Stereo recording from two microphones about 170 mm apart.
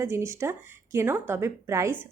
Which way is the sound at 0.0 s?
15° right (ahead or behind).